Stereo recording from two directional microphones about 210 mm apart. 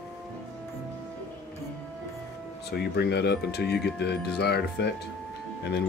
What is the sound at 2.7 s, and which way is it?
Speech, 50° left (ahead or behind).